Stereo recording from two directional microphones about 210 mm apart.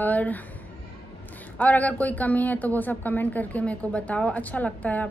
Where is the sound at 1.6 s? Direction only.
5° left (ahead or behind).